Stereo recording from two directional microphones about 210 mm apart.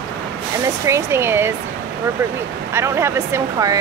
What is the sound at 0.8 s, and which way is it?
Speech, 10° right (ahead or behind).